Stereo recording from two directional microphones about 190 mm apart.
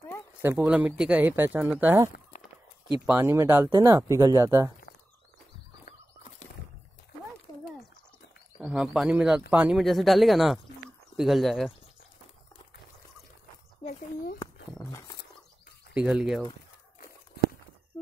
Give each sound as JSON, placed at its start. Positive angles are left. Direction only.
{"t": 0.4, "sound": "speech", "side_deg": -10}
{"t": 3.1, "sound": "speech", "side_deg": -15}
{"t": 8.5, "sound": "speech", "side_deg": -5}
{"t": 14.8, "sound": "a sound", "side_deg": 15}
{"t": 15.9, "sound": "speech", "side_deg": -5}